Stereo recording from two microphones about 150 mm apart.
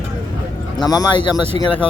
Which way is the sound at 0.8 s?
25° left (ahead or behind).